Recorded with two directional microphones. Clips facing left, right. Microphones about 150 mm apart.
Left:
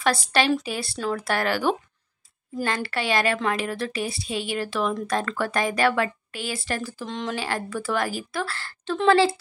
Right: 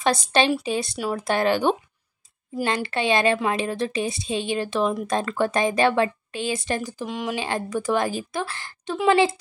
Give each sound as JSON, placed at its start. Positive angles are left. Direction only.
{"t": 0.0, "sound": "a woman's voice", "side_deg": -20}